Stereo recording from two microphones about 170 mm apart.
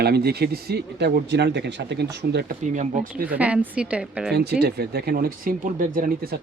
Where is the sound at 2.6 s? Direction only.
50° right (ahead or behind).